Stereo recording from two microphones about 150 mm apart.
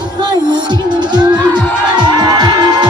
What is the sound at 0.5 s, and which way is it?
Music, 30° right (ahead or behind).